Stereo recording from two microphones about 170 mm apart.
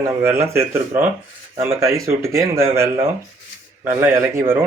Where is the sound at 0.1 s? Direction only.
15° right (ahead or behind).